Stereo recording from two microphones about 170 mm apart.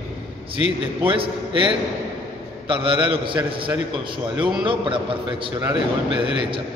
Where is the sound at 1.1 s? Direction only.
30° right (ahead or behind).